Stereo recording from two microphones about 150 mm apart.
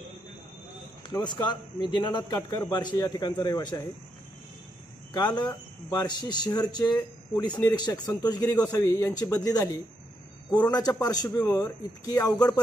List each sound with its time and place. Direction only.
1.1 s a man's voice: 30° left (ahead or behind)
5.1 s a man's voice: 25° left (ahead or behind)